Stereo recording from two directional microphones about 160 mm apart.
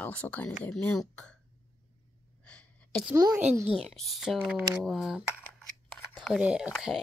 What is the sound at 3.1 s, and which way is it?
Speech, 20° right (ahead or behind).